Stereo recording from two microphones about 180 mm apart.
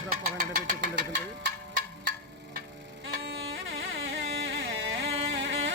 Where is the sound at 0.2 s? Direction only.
55° right (ahead or behind).